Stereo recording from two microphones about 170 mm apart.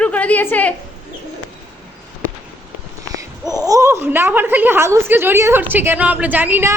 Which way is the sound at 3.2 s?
20° right (ahead or behind).